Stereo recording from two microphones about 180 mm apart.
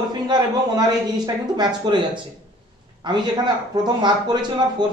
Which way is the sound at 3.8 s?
25° right (ahead or behind).